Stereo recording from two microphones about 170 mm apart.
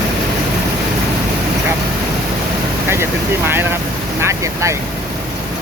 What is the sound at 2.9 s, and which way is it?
Vehicle, 15° right (ahead or behind).